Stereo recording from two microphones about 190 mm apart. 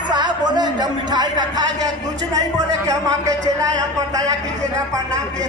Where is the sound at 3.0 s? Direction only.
15° right (ahead or behind).